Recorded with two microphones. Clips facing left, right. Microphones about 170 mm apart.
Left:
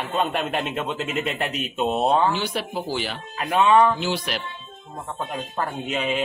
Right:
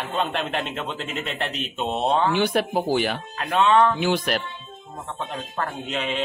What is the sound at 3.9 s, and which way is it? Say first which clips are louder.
Speech: right 4 dB; 50° right (ahead or behind).